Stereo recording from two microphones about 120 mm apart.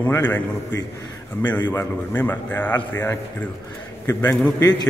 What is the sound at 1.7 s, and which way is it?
A man's voice, 20° left (ahead or behind).